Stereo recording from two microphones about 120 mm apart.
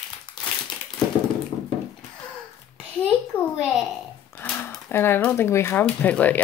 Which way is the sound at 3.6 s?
Centre (ahead or behind).